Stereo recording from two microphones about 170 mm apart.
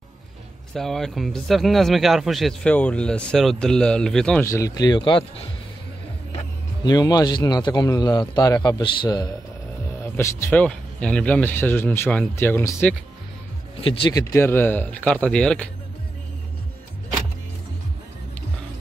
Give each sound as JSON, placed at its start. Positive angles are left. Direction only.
{"t": 0.7, "sound": "speech", "side_deg": 0}
{"t": 4.5, "sound": "a man's voice", "side_deg": 20}
{"t": 6.3, "sound": "a man's voice", "side_deg": 25}
{"t": 10.0, "sound": "speech", "side_deg": 15}
{"t": 13.7, "sound": "speech", "side_deg": 30}
{"t": 14.1, "sound": "speech", "side_deg": 15}